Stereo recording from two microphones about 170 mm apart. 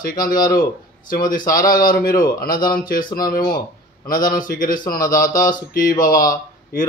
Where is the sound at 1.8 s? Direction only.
55° left (ahead or behind).